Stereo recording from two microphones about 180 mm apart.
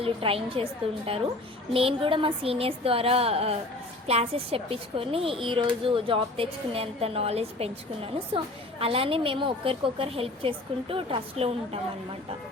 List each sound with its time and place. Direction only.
0.0 s speech: 30° right (ahead or behind)